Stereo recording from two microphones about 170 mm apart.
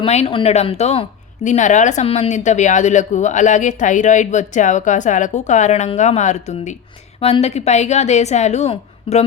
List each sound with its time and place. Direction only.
0.0 s a woman's voice: 35° left (ahead or behind)